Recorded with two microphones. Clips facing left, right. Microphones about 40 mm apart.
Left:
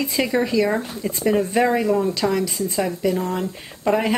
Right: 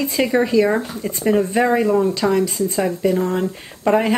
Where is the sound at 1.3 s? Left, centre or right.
Centre.